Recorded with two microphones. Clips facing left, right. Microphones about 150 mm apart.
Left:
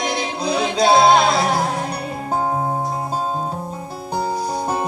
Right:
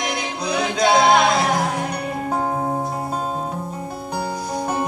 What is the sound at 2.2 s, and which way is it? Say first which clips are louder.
Music: left 2 dB; 30° left (ahead or behind).